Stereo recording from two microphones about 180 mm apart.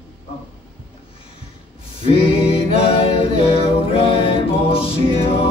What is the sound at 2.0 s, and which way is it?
Mantra, 30° left (ahead or behind).